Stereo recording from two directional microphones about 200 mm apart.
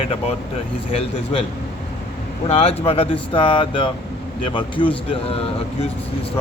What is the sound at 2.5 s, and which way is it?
Speech, 30° left (ahead or behind).